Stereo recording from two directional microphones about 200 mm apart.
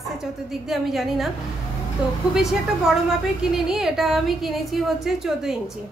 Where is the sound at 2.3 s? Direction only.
Centre (ahead or behind).